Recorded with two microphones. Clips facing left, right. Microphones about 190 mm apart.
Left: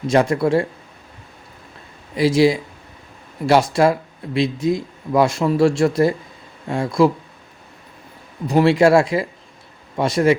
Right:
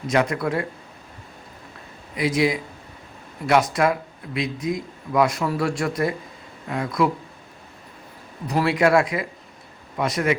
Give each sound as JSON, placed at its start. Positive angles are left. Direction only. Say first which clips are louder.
{"t": 0.1, "sound": "speech", "louder": "left 6 dB", "side_deg": 30}
{"t": 2.1, "sound": "speech", "louder": "left 6 dB", "side_deg": 30}
{"t": 8.4, "sound": "speech", "louder": "left 6 dB", "side_deg": 25}